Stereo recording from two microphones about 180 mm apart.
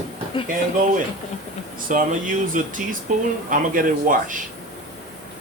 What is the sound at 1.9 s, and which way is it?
Speech, 45° right (ahead or behind).